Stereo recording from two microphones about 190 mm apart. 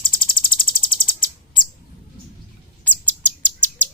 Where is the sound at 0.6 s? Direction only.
25° left (ahead or behind).